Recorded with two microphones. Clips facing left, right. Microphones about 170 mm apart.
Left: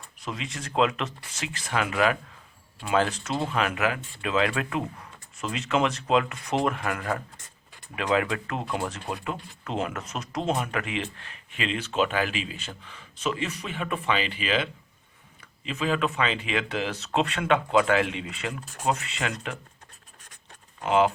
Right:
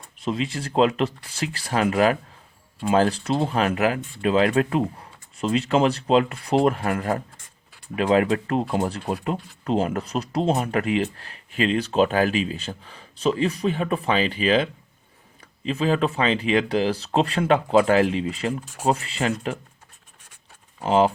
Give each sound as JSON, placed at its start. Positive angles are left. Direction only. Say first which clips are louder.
{"t": 0.2, "sound": "speech", "louder": "right 9 dB", "side_deg": -30}
{"t": 20.7, "sound": "speech", "louder": "right 3 dB", "side_deg": -30}